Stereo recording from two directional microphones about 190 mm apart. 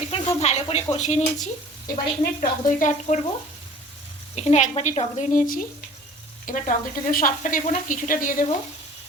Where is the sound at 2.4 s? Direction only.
45° left (ahead or behind).